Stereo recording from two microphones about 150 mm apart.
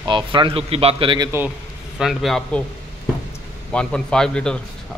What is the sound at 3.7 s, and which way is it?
Speech, 5° left (ahead or behind).